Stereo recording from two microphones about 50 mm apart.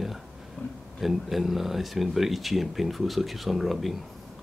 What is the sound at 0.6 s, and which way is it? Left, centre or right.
Speech, left.